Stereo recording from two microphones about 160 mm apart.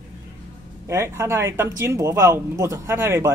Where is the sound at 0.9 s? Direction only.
15° right (ahead or behind).